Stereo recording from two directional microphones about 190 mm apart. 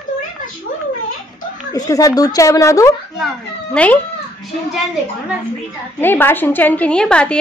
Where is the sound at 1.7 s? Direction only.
20° left (ahead or behind).